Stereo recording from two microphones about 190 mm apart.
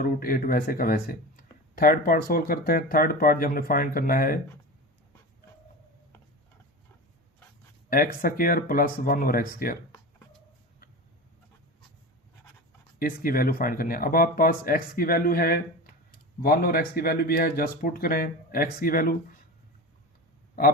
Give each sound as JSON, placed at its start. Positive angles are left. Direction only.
{"t": 0.0, "sound": "speech", "side_deg": 50}
{"t": 7.9, "sound": "speech", "side_deg": 50}
{"t": 13.0, "sound": "speech", "side_deg": 50}